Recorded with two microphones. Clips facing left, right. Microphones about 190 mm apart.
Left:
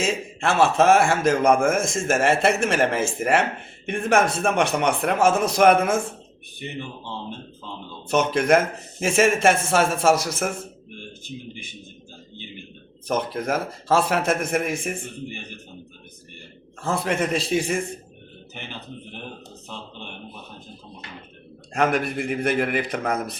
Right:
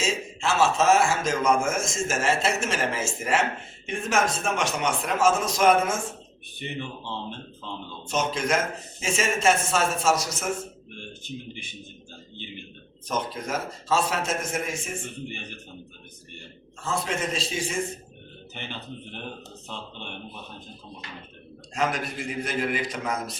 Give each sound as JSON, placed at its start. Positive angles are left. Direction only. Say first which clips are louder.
{"t": 0.0, "sound": "a man's voice", "louder": "left 4 dB", "side_deg": 55}
{"t": 8.0, "sound": "a man's voice", "louder": "left 6 dB", "side_deg": 60}
{"t": 11.3, "sound": "a man's voice", "louder": "even", "side_deg": 5}
{"t": 13.1, "sound": "a man's voice", "louder": "left 5 dB", "side_deg": 55}
{"t": 16.8, "sound": "a man's voice", "louder": "left 5 dB", "side_deg": 60}
{"t": 21.8, "sound": "a man's voice", "louder": "left 6 dB", "side_deg": 60}